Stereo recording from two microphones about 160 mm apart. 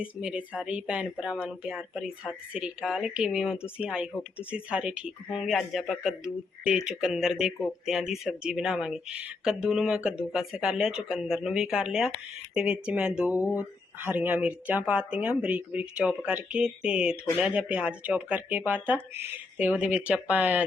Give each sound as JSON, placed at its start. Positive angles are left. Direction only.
{"t": 0.0, "sound": "speech", "side_deg": -5}